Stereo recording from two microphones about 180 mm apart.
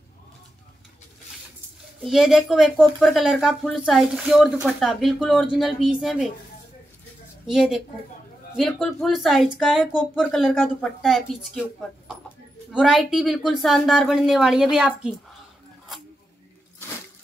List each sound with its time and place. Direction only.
2.0 s speech: 5° right (ahead or behind)
7.4 s speech: 5° right (ahead or behind)